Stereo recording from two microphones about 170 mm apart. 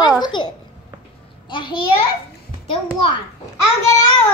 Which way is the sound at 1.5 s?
30° left (ahead or behind).